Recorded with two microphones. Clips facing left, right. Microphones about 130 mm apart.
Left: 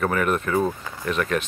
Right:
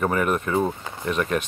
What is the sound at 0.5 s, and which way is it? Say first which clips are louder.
Speech: even; 25° right (ahead or behind).